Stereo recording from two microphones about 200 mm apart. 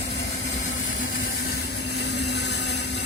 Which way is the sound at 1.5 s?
55° left (ahead or behind).